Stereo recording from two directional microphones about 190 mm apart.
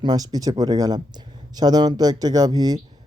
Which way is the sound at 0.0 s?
20° right (ahead or behind).